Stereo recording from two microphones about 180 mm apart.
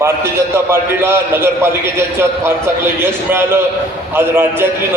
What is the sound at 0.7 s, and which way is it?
A man's voice, 15° right (ahead or behind).